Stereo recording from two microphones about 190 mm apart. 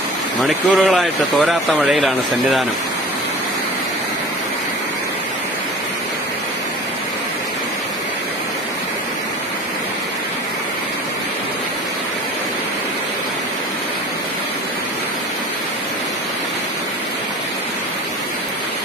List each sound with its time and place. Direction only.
0.4 s speech: centre (ahead or behind)